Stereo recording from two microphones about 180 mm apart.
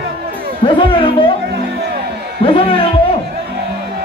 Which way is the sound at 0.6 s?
30° left (ahead or behind).